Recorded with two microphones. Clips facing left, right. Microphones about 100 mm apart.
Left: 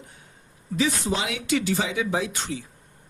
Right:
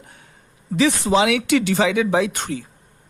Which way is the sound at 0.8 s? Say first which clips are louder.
Right 8 dB; 90° right.